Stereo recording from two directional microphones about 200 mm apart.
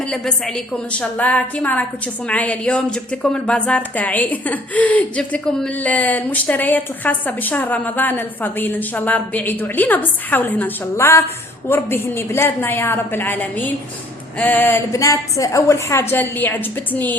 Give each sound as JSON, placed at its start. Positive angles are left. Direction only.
{"t": 0.1, "sound": "a woman's voice", "side_deg": 5}